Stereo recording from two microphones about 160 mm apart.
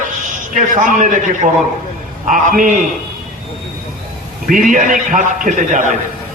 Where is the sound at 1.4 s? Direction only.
30° right (ahead or behind).